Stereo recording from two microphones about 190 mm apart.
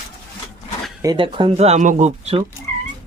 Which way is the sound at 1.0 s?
25° right (ahead or behind).